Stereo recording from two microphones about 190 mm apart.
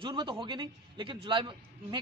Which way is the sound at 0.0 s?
25° right (ahead or behind).